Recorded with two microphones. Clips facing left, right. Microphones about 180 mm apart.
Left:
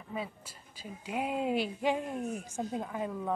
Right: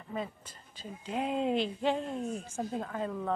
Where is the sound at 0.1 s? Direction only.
5° left (ahead or behind).